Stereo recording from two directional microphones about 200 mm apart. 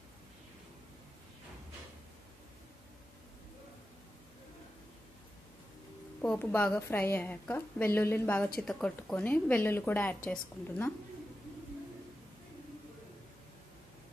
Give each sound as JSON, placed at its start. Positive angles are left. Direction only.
{"t": 6.2, "sound": "a woman's voice", "side_deg": 5}